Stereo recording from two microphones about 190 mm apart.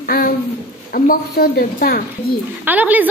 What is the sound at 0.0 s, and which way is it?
A woman's voice, 50° left (ahead or behind).